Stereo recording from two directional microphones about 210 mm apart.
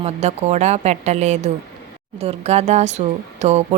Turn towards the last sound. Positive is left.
turn(degrees=-30)  # may be behind; listen again after turning